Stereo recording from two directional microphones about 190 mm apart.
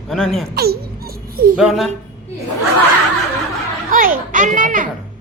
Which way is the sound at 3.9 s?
45° right (ahead or behind).